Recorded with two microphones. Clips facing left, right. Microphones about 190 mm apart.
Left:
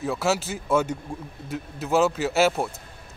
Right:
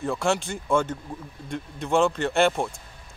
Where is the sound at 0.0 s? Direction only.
5° left (ahead or behind).